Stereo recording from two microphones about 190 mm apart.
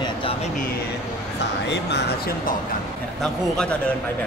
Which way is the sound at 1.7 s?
60° left (ahead or behind).